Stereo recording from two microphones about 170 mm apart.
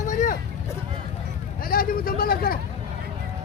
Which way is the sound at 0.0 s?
50° left (ahead or behind).